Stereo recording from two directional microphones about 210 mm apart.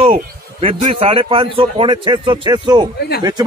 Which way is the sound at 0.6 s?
25° right (ahead or behind).